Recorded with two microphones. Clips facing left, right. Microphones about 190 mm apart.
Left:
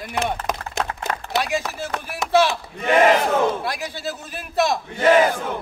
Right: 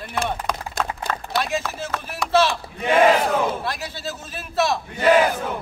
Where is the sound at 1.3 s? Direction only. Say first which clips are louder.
Left 1 dB; 15° left (ahead or behind).